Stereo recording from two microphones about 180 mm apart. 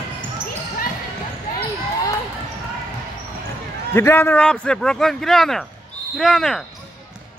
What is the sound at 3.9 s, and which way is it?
Speech, 15° left (ahead or behind).